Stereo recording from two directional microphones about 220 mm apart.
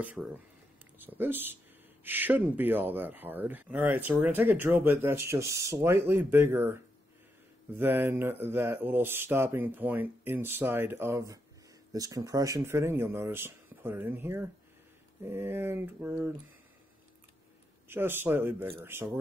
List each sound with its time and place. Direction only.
0.0 s speech: 5° right (ahead or behind)
17.8 s speech: 10° right (ahead or behind)